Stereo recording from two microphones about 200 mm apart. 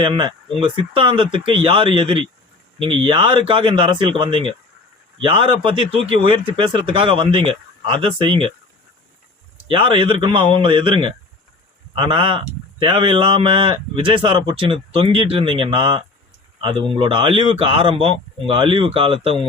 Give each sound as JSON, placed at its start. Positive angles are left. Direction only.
{"t": 0.0, "sound": "speech", "side_deg": -25}
{"t": 9.6, "sound": "speech", "side_deg": -25}